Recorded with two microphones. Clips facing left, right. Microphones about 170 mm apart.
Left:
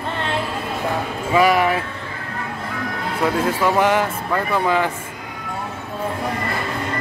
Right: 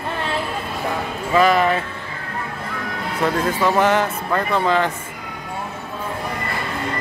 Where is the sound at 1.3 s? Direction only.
10° left (ahead or behind).